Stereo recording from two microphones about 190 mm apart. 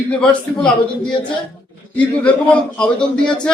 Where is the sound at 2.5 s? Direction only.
5° left (ahead or behind).